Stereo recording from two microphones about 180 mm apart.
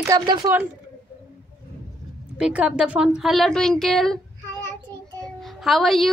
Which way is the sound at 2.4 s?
5° right (ahead or behind).